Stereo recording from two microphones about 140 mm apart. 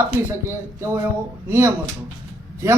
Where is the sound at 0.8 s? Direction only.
20° right (ahead or behind).